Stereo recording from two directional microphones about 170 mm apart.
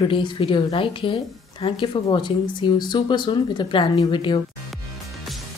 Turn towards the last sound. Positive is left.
turn(degrees=30)  # may be behind; listen again after turning